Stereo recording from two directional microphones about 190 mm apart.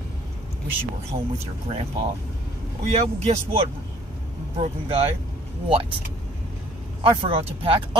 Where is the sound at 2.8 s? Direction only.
35° right (ahead or behind).